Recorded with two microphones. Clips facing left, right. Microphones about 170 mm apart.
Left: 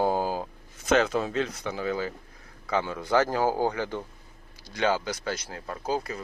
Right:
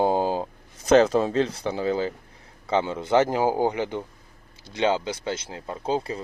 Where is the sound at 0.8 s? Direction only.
35° right (ahead or behind).